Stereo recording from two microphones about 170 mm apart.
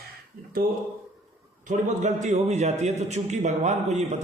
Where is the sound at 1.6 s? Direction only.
45° right (ahead or behind).